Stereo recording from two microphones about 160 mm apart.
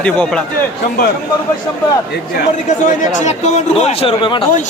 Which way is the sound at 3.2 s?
45° left (ahead or behind).